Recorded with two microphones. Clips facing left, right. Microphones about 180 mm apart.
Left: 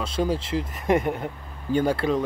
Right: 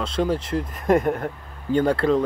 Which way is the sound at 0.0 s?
5° left (ahead or behind).